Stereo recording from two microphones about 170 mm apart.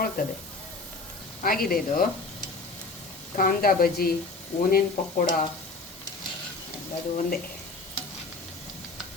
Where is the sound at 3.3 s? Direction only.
55° left (ahead or behind).